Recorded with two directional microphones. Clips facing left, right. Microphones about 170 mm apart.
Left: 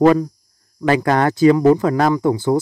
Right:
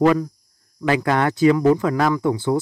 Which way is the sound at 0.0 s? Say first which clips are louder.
Left 4 dB; 35° left (ahead or behind).